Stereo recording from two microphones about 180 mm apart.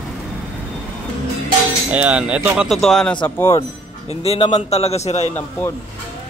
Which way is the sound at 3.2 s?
15° left (ahead or behind).